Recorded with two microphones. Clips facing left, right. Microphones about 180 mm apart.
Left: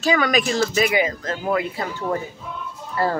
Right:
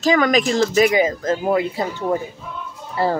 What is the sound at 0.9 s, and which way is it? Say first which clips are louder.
Speech: right 4 dB; 35° right (ahead or behind).